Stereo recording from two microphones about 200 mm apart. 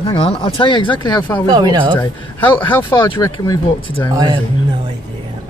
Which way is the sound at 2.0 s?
25° left (ahead or behind).